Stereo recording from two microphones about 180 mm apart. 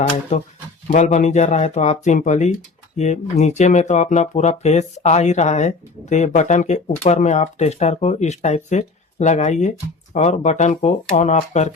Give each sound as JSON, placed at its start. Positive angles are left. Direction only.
{"t": 0.3, "sound": "speech", "side_deg": 35}